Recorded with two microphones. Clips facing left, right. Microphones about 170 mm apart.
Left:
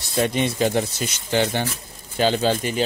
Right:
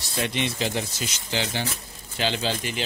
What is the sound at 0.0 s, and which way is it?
Speech, 45° left (ahead or behind).